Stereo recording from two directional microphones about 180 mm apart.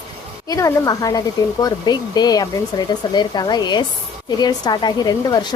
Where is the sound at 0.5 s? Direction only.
20° left (ahead or behind).